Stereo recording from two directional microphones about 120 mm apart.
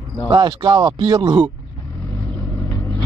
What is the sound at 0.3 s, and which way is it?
Speech, 35° right (ahead or behind).